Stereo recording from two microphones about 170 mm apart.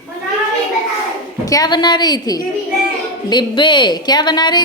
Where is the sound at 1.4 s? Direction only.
20° left (ahead or behind).